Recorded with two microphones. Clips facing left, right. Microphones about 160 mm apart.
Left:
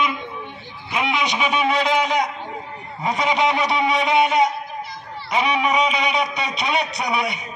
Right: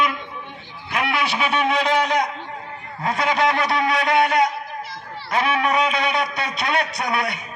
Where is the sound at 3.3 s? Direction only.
20° left (ahead or behind).